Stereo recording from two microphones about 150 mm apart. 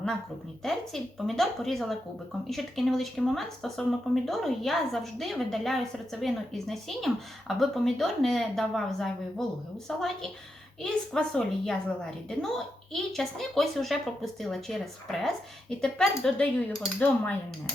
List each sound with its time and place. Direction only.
0.6 s speech: centre (ahead or behind)